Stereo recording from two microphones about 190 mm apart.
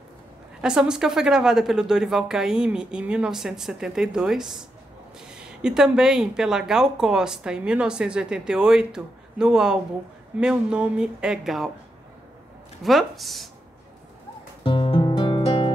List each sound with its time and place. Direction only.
0.6 s a woman's voice: 5° right (ahead or behind)
12.8 s a woman's voice: centre (ahead or behind)
14.6 s music: 25° left (ahead or behind)